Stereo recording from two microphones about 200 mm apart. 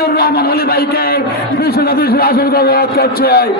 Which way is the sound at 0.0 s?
50° left (ahead or behind).